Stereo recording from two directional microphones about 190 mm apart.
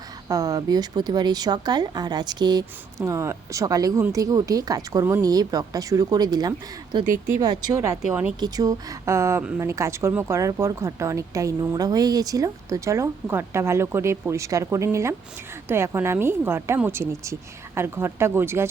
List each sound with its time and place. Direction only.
0.3 s speech: 20° right (ahead or behind)
7.0 s speech: 45° right (ahead or behind)
7.4 s a woman's voice: 20° right (ahead or behind)